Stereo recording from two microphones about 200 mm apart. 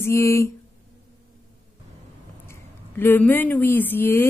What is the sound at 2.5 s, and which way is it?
Speech, 10° left (ahead or behind).